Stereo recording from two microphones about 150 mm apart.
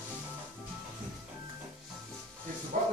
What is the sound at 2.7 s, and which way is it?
Music, 55° right (ahead or behind).